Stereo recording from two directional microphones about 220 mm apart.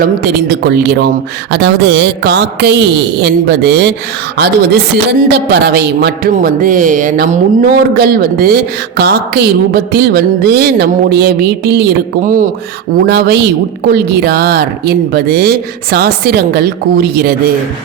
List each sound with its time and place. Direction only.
0.0 s speech: 50° right (ahead or behind)